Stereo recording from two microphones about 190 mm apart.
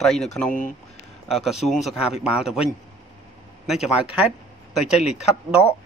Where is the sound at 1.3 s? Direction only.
Centre (ahead or behind).